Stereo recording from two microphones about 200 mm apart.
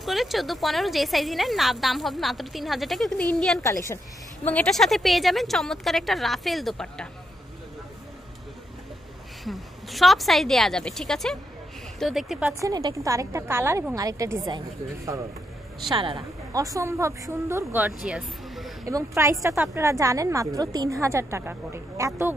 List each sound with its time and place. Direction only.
0.0 s speech: centre (ahead or behind)
3.6 s speech: 15° left (ahead or behind)
9.4 s speech: centre (ahead or behind)
12.5 s a woman's voice: 20° right (ahead or behind)
15.9 s a woman's voice: 25° right (ahead or behind); by 18.7 s 5° right (ahead or behind)
18.9 s a woman's voice: 15° right (ahead or behind)